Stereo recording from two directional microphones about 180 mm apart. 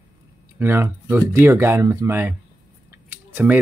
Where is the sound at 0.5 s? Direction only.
10° right (ahead or behind).